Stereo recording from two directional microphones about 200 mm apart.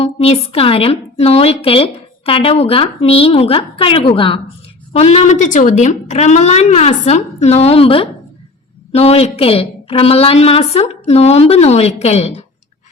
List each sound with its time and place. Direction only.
0.0 s a woman's voice: 30° left (ahead or behind)